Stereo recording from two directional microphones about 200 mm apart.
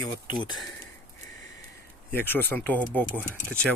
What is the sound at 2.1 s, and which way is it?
Speech, 10° left (ahead or behind).